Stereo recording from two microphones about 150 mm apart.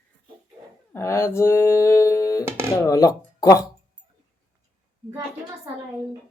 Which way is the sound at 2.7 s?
20° left (ahead or behind).